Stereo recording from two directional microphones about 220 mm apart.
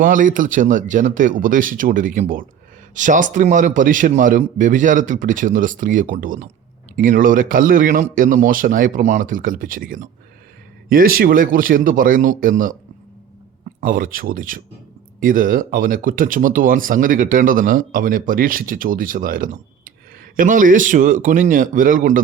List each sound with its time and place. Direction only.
0.0 s speech: 35° right (ahead or behind)
13.8 s speech: 40° right (ahead or behind)